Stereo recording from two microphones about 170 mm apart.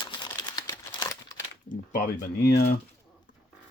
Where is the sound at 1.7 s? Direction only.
50° left (ahead or behind).